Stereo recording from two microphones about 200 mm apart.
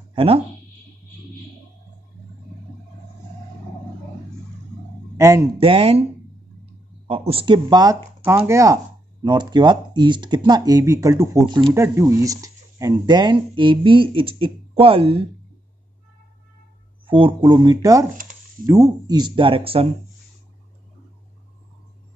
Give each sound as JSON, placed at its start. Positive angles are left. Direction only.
{"t": 0.1, "sound": "a sound", "side_deg": -25}
{"t": 5.1, "sound": "a man's voice", "side_deg": -15}
{"t": 5.6, "sound": "speech", "side_deg": -25}
{"t": 7.1, "sound": "speech", "side_deg": -30}
{"t": 17.0, "sound": "speech", "side_deg": -25}